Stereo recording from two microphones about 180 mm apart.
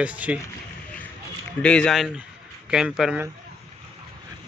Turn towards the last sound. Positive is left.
turn(degrees=-5)  # may be behind; listen again after turning